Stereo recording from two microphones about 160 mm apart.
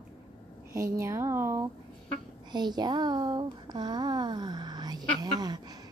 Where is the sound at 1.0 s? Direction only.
20° right (ahead or behind).